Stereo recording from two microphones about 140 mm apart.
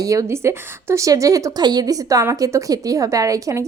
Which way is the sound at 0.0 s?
25° right (ahead or behind).